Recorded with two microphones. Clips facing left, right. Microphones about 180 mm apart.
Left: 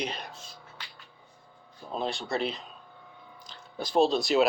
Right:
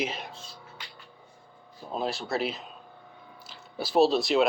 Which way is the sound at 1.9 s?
5° right (ahead or behind).